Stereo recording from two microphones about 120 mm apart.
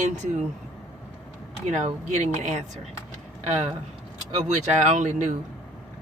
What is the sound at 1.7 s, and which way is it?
Speech, 70° right (ahead or behind).